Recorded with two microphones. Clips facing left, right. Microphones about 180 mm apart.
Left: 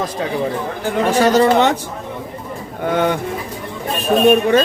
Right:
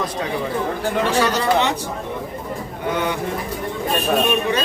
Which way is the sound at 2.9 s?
50° left (ahead or behind).